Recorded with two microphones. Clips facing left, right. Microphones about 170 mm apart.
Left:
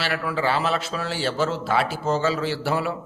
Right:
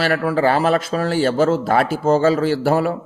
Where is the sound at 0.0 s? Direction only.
45° right (ahead or behind).